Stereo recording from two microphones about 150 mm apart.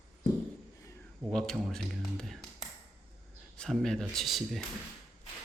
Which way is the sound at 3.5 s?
5° left (ahead or behind).